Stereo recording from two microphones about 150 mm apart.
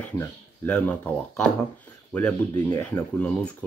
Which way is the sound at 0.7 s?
10° left (ahead or behind).